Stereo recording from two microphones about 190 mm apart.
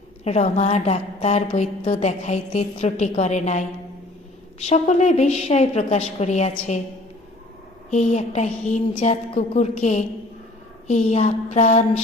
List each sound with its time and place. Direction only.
0.3 s a woman's voice: 35° left (ahead or behind)
4.6 s a woman's voice: 35° left (ahead or behind)
7.9 s a woman's voice: 35° left (ahead or behind)